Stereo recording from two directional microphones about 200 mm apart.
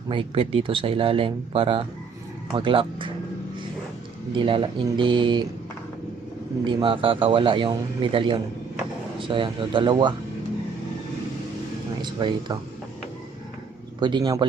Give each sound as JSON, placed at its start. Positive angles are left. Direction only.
{"t": 0.1, "sound": "speech", "side_deg": -25}
{"t": 4.3, "sound": "speech", "side_deg": -25}
{"t": 6.7, "sound": "speech", "side_deg": -25}
{"t": 12.0, "sound": "speech", "side_deg": -20}
{"t": 14.0, "sound": "speech", "side_deg": -20}